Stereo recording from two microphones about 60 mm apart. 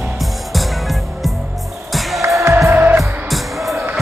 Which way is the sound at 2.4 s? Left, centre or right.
Right.